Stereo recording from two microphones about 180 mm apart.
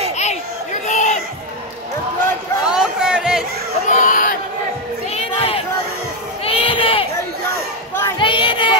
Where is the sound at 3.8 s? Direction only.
45° left (ahead or behind).